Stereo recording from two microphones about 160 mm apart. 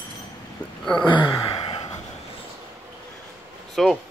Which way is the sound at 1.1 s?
25° left (ahead or behind).